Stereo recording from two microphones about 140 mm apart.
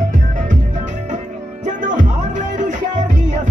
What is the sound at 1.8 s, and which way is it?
Music, 65° right (ahead or behind).